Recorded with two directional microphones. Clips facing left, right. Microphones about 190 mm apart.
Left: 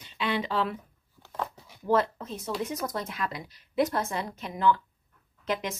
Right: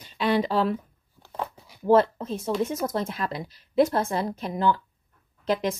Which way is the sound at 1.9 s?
30° right (ahead or behind).